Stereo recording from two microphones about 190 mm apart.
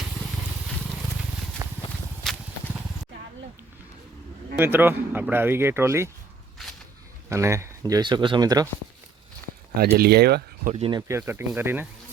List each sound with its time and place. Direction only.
2.3 s a sound: centre (ahead or behind)
4.5 s speech: 10° right (ahead or behind)
7.3 s speech: 15° right (ahead or behind)
9.7 s speech: 55° right (ahead or behind)
10.7 s speech: 30° right (ahead or behind)
11.1 s speech: 10° right (ahead or behind)